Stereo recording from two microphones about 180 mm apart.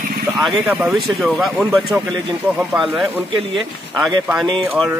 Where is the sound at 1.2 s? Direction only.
Centre (ahead or behind).